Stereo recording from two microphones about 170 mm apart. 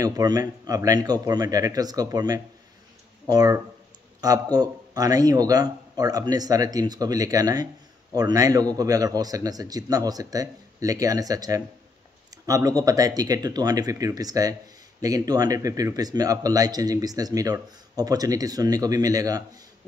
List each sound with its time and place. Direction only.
0.0 s speech: 20° right (ahead or behind)